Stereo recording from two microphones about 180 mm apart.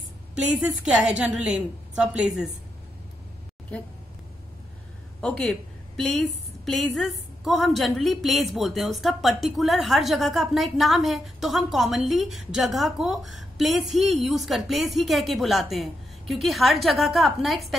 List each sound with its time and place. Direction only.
0.8 s a woman's voice: 5° right (ahead or behind)
3.7 s speech: 5° left (ahead or behind)
5.2 s a woman's voice: 5° left (ahead or behind)